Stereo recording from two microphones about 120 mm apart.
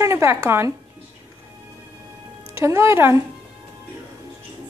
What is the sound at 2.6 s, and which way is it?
Speech, 25° right (ahead or behind).